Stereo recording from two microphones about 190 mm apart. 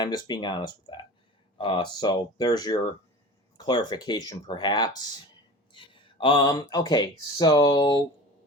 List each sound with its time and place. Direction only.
0.0 s speech: 20° left (ahead or behind)